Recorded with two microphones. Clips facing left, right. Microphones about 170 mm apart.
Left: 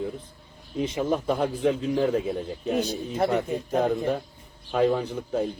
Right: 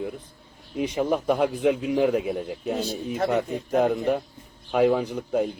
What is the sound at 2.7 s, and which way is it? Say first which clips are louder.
Speech: left 3 dB; 15° left (ahead or behind).